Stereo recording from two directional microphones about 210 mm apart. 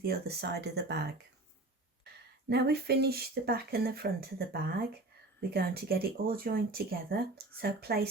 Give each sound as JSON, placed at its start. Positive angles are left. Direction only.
{"t": 0.0, "sound": "speech", "side_deg": -50}
{"t": 2.5, "sound": "speech", "side_deg": -50}